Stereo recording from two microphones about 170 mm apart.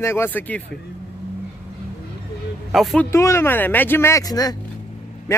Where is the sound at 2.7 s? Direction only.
Centre (ahead or behind).